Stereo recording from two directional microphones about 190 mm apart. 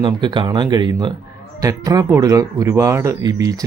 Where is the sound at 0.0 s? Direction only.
25° right (ahead or behind).